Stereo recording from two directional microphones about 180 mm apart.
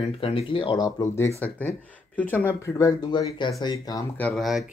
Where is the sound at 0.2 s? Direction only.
30° left (ahead or behind).